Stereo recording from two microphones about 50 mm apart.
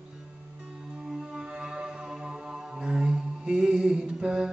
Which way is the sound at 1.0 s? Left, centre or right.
Centre.